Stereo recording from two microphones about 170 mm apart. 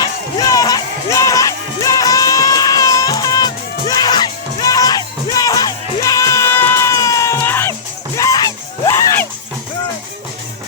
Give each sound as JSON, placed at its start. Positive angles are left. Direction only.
{"t": 0.0, "sound": "music", "side_deg": 20}